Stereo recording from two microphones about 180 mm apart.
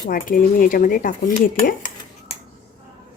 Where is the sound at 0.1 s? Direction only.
50° left (ahead or behind).